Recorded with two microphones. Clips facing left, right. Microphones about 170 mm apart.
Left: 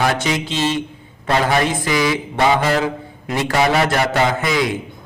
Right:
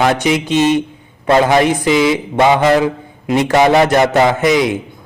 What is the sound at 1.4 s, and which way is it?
A man's voice, 20° right (ahead or behind).